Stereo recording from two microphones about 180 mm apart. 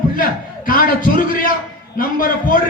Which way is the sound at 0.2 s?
50° left (ahead or behind).